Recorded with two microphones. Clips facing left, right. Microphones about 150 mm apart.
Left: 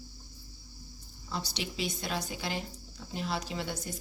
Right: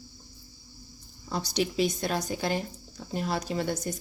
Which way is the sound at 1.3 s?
45° right (ahead or behind).